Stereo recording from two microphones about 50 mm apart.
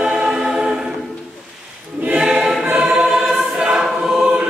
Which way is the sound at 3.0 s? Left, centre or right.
Centre.